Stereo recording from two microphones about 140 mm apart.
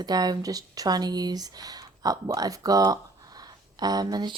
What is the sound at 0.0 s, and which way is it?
Speech, 30° right (ahead or behind).